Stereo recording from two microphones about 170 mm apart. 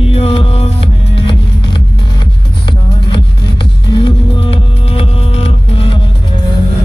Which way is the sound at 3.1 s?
30° left (ahead or behind).